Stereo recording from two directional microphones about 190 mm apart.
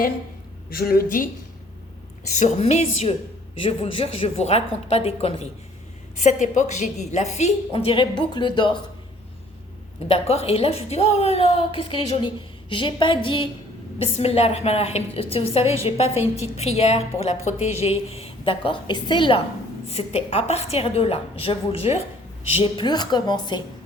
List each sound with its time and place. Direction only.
0.7 s a woman's voice: 50° left (ahead or behind)
2.4 s a woman's voice: 30° left (ahead or behind)
10.1 s a woman's voice: 30° left (ahead or behind)